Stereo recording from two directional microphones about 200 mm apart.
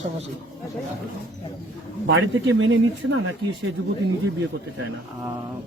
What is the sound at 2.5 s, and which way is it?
Speech, 70° right (ahead or behind).